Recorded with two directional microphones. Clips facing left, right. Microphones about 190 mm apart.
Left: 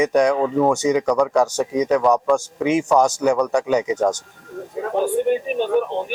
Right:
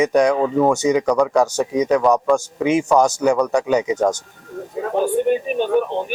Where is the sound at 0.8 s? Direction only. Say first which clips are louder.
Right 1 dB; 10° right (ahead or behind).